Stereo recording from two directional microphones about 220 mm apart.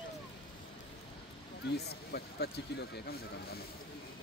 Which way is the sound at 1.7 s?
45° left (ahead or behind).